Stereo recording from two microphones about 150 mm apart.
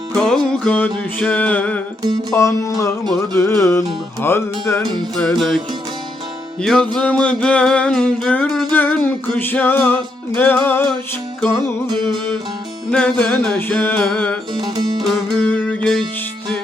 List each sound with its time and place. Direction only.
0.1 s music: 5° left (ahead or behind)
2.3 s music: 20° left (ahead or behind)
5.1 s music: centre (ahead or behind)
12.9 s music: 5° left (ahead or behind)
14.5 s music: 30° right (ahead or behind)
15.0 s music: 10° left (ahead or behind)